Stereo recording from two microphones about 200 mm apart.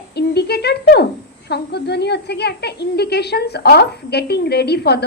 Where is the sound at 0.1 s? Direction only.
55° left (ahead or behind).